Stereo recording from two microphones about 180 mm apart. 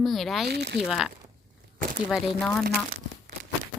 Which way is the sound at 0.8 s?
Centre (ahead or behind).